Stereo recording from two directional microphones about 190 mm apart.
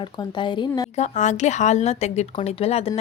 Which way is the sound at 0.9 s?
40° left (ahead or behind).